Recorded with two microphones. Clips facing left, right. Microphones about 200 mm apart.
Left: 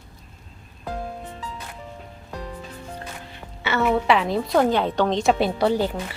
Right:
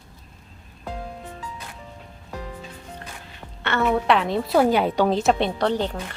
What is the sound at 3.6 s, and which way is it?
Music, 5° left (ahead or behind).